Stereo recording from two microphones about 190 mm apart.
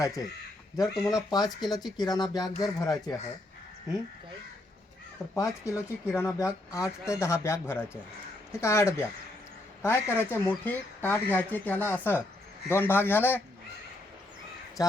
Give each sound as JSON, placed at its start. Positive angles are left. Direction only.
{"t": 0.0, "sound": "speech", "side_deg": 15}
{"t": 5.4, "sound": "speech", "side_deg": 15}
{"t": 14.8, "sound": "speech", "side_deg": 20}